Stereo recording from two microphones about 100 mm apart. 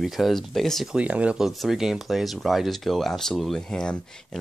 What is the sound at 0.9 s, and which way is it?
Speech, 10° right (ahead or behind).